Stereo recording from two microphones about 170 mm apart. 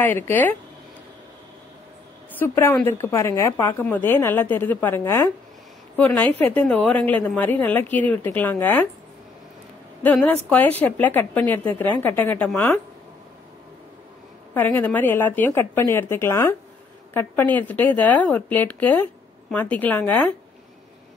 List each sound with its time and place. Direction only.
0.0 s a woman's voice: 10° left (ahead or behind)
2.3 s a woman's voice: 10° left (ahead or behind)
10.0 s a woman's voice: 10° left (ahead or behind)
14.5 s a woman's voice: 10° left (ahead or behind)